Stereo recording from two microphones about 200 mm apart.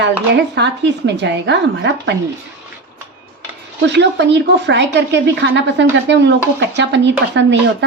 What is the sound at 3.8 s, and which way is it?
Speech, 60° right (ahead or behind).